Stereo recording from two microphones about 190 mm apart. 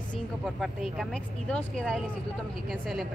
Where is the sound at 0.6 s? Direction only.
Centre (ahead or behind).